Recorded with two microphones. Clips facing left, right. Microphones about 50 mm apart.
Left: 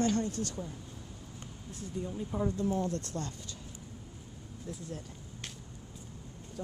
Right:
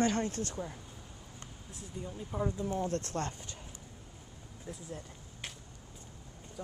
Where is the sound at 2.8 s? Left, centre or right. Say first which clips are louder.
Right 2 dB; right.